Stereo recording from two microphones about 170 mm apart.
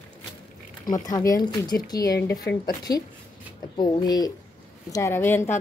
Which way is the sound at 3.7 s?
30° left (ahead or behind).